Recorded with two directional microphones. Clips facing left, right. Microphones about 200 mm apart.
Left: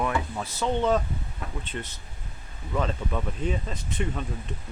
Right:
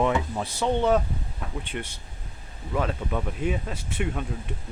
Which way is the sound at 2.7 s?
5° right (ahead or behind).